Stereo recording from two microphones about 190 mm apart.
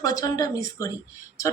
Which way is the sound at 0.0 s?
20° left (ahead or behind).